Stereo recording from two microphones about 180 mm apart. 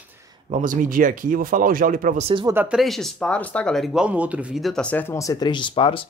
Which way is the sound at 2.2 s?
25° right (ahead or behind).